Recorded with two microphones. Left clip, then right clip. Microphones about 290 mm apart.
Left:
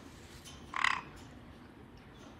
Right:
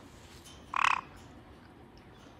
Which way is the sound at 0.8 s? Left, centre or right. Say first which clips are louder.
Right 4 dB; centre.